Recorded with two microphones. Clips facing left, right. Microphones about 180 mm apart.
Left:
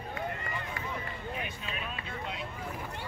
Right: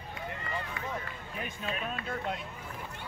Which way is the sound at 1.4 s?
40° right (ahead or behind).